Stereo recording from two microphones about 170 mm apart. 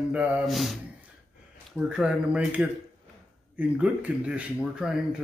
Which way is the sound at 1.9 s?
5° right (ahead or behind).